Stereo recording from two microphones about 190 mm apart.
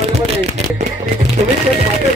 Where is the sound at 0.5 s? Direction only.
35° right (ahead or behind).